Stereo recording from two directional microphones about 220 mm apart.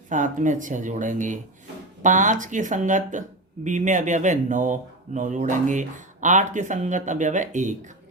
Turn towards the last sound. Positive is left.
turn(degrees=-35)  # may be behind; listen again after turning